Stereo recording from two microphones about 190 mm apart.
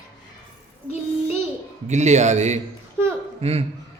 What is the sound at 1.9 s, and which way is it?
A man's voice, 35° right (ahead or behind).